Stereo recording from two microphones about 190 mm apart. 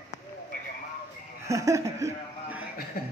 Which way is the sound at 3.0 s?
50° left (ahead or behind).